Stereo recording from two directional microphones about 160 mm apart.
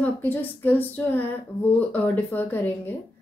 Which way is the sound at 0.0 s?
10° left (ahead or behind).